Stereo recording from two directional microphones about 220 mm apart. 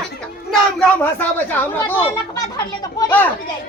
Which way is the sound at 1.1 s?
10° left (ahead or behind).